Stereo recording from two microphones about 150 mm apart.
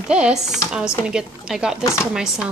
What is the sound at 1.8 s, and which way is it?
Speech, 20° left (ahead or behind).